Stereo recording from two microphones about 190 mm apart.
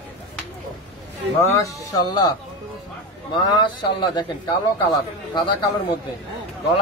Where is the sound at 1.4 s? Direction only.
15° left (ahead or behind).